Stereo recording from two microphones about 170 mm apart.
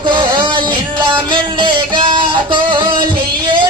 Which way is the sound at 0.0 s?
25° right (ahead or behind).